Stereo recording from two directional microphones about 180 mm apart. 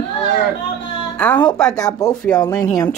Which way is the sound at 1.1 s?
5° left (ahead or behind).